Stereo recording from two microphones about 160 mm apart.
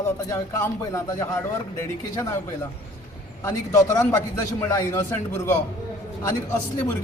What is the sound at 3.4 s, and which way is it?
A man's voice, 20° left (ahead or behind).